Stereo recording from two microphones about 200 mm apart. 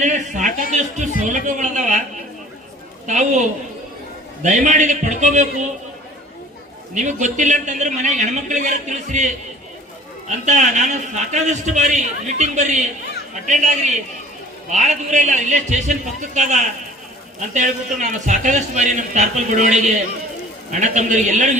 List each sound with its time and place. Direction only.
0.0 s a sound: 40° right (ahead or behind)
3.1 s a man's voice: 35° right (ahead or behind)
4.4 s a man's voice: 35° right (ahead or behind)
6.9 s a man's voice: 35° right (ahead or behind)